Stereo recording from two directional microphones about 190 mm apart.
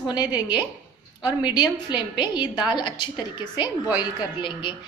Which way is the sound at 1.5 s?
20° left (ahead or behind).